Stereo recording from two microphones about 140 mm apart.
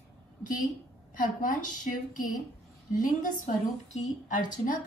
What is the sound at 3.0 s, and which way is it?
Speech, 75° left (ahead or behind).